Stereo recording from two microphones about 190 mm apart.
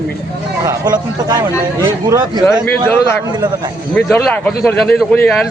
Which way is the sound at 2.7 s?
10° left (ahead or behind).